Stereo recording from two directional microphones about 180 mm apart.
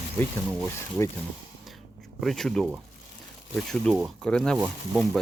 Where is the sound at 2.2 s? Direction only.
Centre (ahead or behind).